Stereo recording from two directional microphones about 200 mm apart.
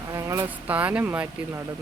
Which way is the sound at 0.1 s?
15° right (ahead or behind).